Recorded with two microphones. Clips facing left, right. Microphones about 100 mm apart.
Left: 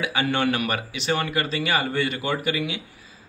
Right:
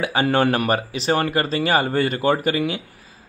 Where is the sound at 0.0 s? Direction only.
40° right (ahead or behind).